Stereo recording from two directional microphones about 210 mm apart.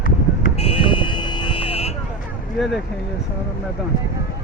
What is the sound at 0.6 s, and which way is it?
Buzzer, 25° left (ahead or behind).